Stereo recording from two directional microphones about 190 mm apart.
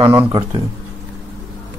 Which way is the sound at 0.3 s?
25° right (ahead or behind).